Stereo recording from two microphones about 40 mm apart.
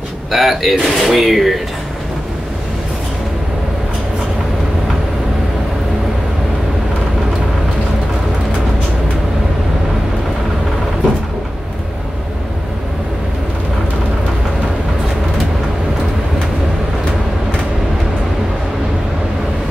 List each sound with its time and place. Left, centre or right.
0.3 s speech: centre